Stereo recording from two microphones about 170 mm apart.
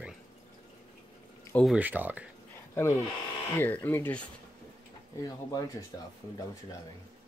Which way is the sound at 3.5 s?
10° left (ahead or behind).